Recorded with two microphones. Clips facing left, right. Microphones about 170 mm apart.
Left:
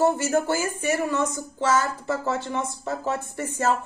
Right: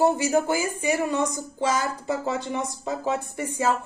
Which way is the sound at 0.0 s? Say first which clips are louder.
Right 1 dB; 15° right (ahead or behind).